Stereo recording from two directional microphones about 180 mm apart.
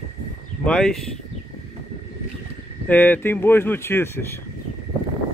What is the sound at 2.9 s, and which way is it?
Speech, 10° left (ahead or behind).